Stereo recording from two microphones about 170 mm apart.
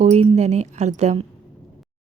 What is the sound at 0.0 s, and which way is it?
A woman's voice, 40° right (ahead or behind).